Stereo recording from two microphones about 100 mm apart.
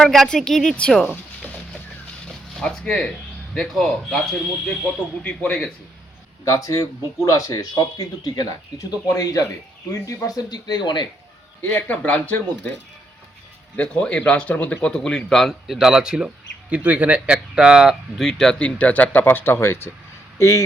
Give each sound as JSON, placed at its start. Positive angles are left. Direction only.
{"t": 0.0, "sound": "speech", "side_deg": 5}
{"t": 2.6, "sound": "a man's voice", "side_deg": 10}
{"t": 5.2, "sound": "a man's voice", "side_deg": 15}
{"t": 6.4, "sound": "speech", "side_deg": 35}
{"t": 11.6, "sound": "a man's voice", "side_deg": 15}
{"t": 13.7, "sound": "a man's voice", "side_deg": 10}